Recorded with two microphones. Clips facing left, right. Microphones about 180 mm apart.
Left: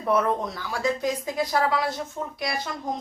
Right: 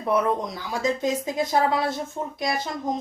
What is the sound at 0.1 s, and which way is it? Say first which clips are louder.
A woman's voice: even; 10° right (ahead or behind).